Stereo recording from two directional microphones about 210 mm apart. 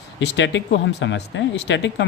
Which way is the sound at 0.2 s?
60° left (ahead or behind).